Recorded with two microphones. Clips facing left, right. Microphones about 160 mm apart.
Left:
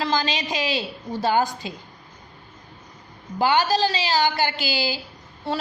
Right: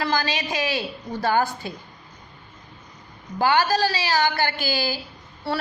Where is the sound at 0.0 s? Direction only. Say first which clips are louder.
Even; 20° left (ahead or behind).